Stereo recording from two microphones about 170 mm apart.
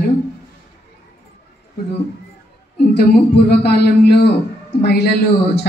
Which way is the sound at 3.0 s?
70° left (ahead or behind).